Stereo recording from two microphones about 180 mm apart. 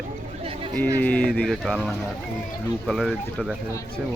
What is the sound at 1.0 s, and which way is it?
Speech, 5° left (ahead or behind).